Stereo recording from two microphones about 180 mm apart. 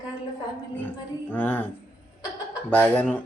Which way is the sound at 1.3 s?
10° left (ahead or behind).